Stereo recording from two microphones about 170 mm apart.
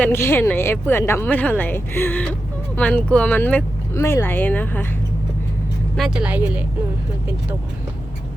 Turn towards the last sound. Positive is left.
turn(degrees=-10)  # may be behind; listen again after turning